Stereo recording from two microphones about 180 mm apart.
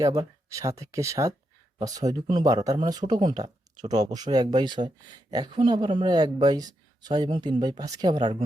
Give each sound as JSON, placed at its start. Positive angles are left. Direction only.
{"t": 0.0, "sound": "speech", "side_deg": -20}